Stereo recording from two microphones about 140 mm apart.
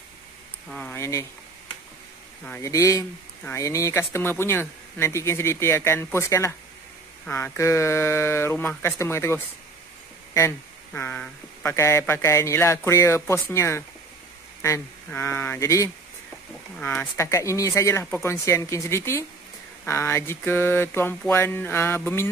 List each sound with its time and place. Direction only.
0.7 s speech: 5° left (ahead or behind)
0.9 s speech: 20° left (ahead or behind)
2.6 s speech: 20° left (ahead or behind)
15.0 s speech: 15° left (ahead or behind)
16.7 s speech: 10° left (ahead or behind)
17.3 s speech: 20° left (ahead or behind)